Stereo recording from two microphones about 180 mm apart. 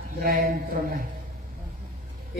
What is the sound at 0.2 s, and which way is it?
Speech, 55° right (ahead or behind).